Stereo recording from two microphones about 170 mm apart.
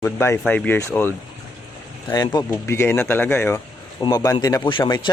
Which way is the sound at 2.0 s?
20° left (ahead or behind).